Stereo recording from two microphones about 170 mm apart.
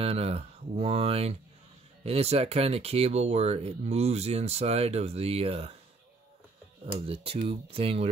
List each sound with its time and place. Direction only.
0.0 s speech: 35° right (ahead or behind)
6.9 s speech: 35° right (ahead or behind)